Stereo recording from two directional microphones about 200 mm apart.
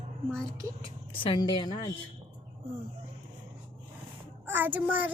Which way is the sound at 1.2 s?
25° left (ahead or behind).